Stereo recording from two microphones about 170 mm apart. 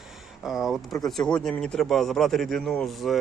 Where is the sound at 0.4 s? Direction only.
Centre (ahead or behind).